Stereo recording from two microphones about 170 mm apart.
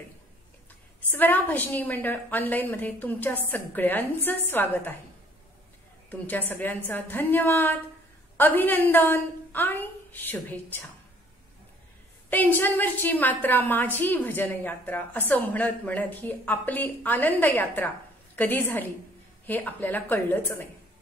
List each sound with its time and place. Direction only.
1.1 s a woman's voice: 10° left (ahead or behind)
6.0 s a woman's voice: 10° left (ahead or behind)
12.3 s a woman's voice: 10° left (ahead or behind)